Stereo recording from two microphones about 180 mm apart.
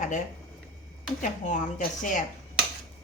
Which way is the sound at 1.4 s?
45° left (ahead or behind).